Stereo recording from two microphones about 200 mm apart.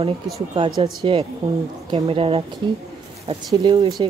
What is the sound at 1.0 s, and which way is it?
Speech, 25° right (ahead or behind).